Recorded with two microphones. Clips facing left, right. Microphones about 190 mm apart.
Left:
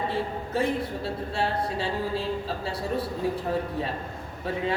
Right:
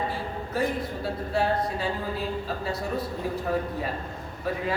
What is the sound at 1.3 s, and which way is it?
A woman's voice, 30° left (ahead or behind).